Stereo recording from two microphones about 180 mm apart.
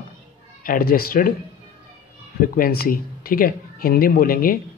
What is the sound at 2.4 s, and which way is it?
Speech, 55° left (ahead or behind).